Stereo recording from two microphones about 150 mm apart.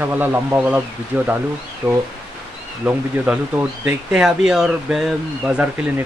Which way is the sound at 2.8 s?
10° right (ahead or behind).